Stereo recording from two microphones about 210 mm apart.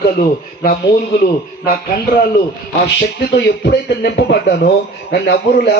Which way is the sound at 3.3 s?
55° left (ahead or behind).